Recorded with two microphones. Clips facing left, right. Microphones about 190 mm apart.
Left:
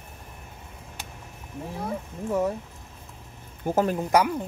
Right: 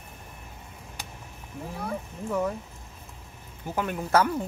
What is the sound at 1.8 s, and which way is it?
Speech, 25° left (ahead or behind).